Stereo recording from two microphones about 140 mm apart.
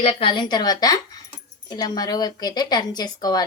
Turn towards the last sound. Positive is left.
turn(degrees=30)  # may be behind; listen again after turning